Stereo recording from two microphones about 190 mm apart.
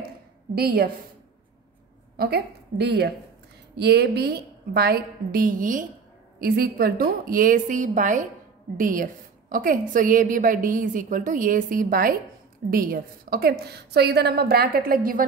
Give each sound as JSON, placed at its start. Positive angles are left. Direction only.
{"t": 0.6, "sound": "a woman's voice", "side_deg": -55}
{"t": 2.1, "sound": "a woman's voice", "side_deg": -60}